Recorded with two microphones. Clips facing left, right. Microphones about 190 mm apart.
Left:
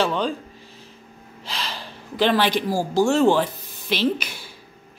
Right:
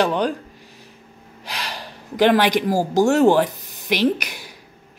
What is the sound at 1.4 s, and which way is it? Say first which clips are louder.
Gasp: right 1 dB; 15° right (ahead or behind).